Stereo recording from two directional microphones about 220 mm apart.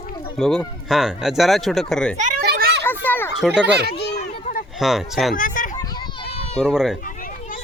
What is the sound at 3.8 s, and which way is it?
Speech, 45° left (ahead or behind).